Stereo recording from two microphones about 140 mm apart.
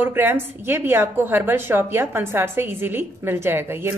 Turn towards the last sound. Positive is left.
turn(degrees=-20)  # may be behind; listen again after turning